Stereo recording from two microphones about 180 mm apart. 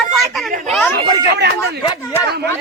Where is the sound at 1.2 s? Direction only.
70° right (ahead or behind).